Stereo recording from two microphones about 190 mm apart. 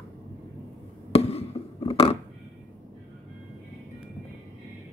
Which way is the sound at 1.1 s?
30° left (ahead or behind).